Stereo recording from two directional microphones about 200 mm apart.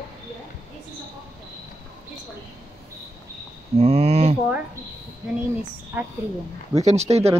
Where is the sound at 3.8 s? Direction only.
30° right (ahead or behind).